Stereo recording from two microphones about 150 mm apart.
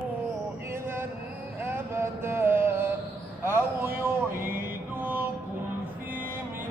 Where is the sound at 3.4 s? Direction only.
15° right (ahead or behind).